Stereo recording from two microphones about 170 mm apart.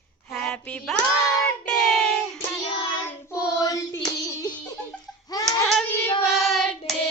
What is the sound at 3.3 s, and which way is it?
Hands, 20° left (ahead or behind).